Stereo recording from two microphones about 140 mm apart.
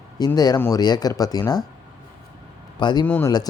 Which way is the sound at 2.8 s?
30° left (ahead or behind).